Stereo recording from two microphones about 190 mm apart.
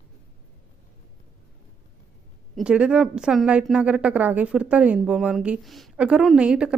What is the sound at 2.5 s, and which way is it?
A woman's voice, 5° right (ahead or behind).